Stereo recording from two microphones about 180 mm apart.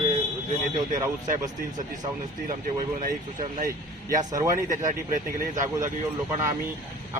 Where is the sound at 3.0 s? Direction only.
50° right (ahead or behind).